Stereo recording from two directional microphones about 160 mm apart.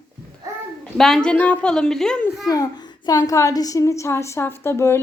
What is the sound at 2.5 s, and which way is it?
A child's voice, 25° left (ahead or behind).